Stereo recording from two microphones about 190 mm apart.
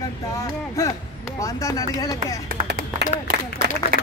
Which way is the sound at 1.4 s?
15° left (ahead or behind).